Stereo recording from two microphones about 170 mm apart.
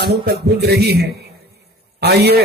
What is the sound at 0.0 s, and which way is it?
A man's voice, 65° right (ahead or behind).